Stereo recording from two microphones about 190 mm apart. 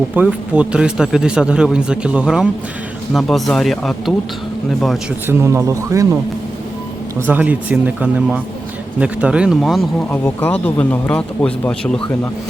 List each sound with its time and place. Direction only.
0.1 s speech: 5° right (ahead or behind)
5.3 s speech: 15° right (ahead or behind)
7.2 s speech: 10° right (ahead or behind)